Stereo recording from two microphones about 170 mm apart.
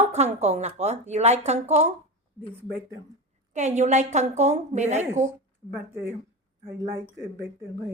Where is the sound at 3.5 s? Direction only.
45° right (ahead or behind).